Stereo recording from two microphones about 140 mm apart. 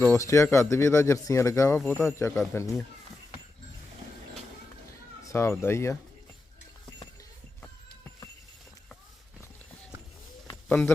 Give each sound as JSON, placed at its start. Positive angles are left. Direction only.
{"t": 0.0, "sound": "speech", "side_deg": 20}
{"t": 5.3, "sound": "speech", "side_deg": 20}
{"t": 10.4, "sound": "bird", "side_deg": 20}